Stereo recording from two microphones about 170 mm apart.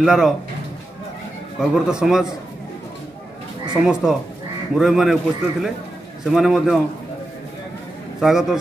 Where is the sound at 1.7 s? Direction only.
5° right (ahead or behind).